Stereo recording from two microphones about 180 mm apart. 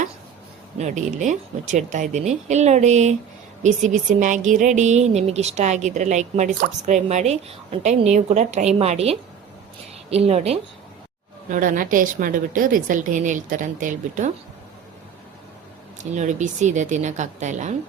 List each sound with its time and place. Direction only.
0.8 s speech: 40° right (ahead or behind)
11.5 s a woman's voice: 50° right (ahead or behind)
16.0 s speech: 40° right (ahead or behind)